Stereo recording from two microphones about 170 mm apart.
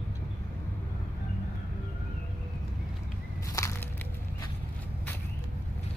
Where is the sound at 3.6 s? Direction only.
20° left (ahead or behind).